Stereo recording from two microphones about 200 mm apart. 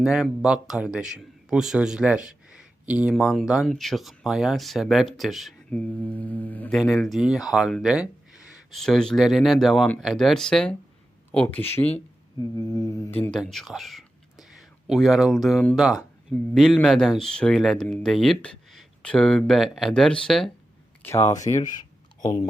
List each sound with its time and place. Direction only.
0.0 s a man's voice: 5° right (ahead or behind)
12.4 s mantra: 20° right (ahead or behind)
13.4 s a man's voice: centre (ahead or behind)
21.4 s a sound: 40° left (ahead or behind)